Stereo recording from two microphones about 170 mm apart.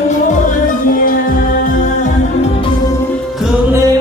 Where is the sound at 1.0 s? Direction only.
55° left (ahead or behind).